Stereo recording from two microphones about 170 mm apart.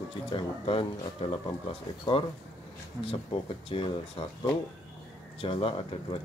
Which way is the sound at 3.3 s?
40° left (ahead or behind).